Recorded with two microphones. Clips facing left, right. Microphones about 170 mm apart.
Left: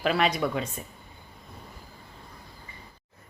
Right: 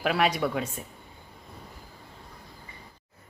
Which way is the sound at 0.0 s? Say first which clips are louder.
Even; 10° right (ahead or behind).